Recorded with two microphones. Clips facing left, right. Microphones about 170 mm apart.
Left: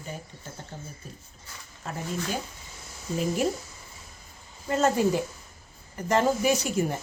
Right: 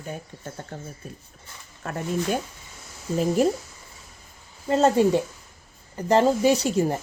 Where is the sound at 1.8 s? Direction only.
60° right (ahead or behind).